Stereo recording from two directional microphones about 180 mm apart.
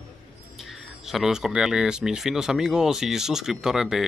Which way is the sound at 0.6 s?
Centre (ahead or behind).